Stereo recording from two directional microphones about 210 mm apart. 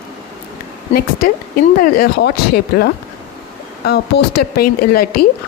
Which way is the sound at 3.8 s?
50° left (ahead or behind).